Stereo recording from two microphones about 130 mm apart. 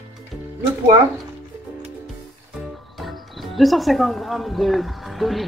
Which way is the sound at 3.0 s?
Centre (ahead or behind).